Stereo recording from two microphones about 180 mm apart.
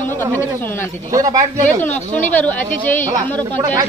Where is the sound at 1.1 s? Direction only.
15° right (ahead or behind).